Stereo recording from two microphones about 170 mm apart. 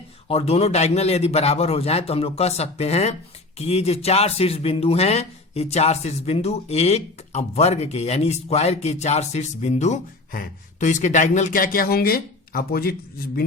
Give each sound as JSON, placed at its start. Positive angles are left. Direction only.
{"t": 0.3, "sound": "speech", "side_deg": 35}